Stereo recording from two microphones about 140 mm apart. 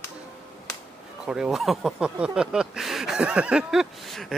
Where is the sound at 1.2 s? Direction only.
5° right (ahead or behind).